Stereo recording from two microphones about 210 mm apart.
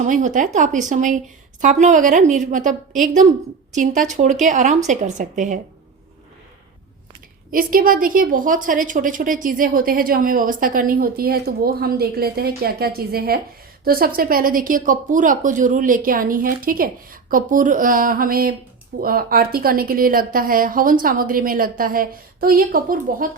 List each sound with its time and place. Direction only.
0.0 s speech: 35° right (ahead or behind)
7.5 s a woman's voice: 45° right (ahead or behind)